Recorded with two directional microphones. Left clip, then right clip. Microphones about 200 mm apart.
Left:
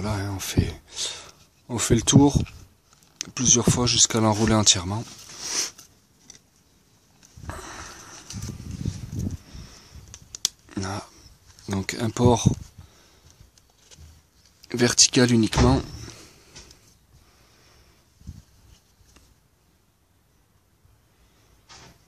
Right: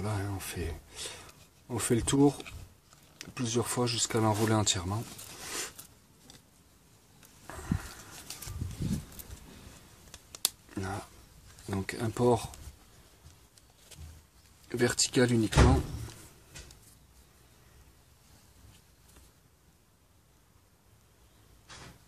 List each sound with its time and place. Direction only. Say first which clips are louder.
0.0 s speech: left 7 dB; 40° left (ahead or behind)
7.4 s sniff: left 4 dB; 45° left (ahead or behind)
10.1 s a sound: left 6 dB; centre (ahead or behind)
10.7 s a sound: left 6 dB; 45° left (ahead or behind)
11.6 s speech: left 7 dB; 45° left (ahead or behind)
14.7 s speech: left 10 dB; 45° left (ahead or behind)